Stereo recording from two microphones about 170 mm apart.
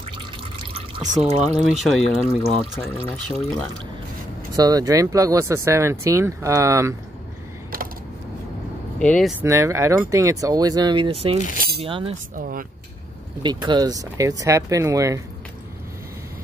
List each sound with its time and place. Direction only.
0.6 s drip: 30° right (ahead or behind)
1.5 s speech: centre (ahead or behind)
4.6 s speech: 20° right (ahead or behind)
9.0 s speech: 5° left (ahead or behind)
9.4 s speech: 15° right (ahead or behind)
11.4 s speech: 50° left (ahead or behind)
11.8 s speech: 35° right (ahead or behind)
12.4 s speech: 55° right (ahead or behind)
13.4 s speech: 25° right (ahead or behind)